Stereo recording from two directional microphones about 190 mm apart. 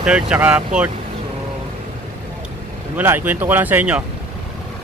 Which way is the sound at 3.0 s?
10° right (ahead or behind).